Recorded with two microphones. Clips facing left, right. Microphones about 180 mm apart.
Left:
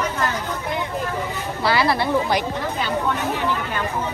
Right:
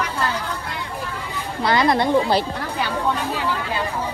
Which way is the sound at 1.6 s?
20° right (ahead or behind).